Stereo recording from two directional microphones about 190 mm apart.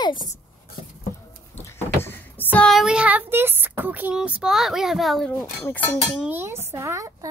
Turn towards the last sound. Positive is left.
turn(degrees=-15)  # may be behind; listen again after turning